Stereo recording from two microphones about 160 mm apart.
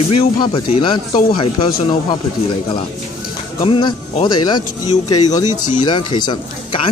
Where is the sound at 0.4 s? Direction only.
35° left (ahead or behind).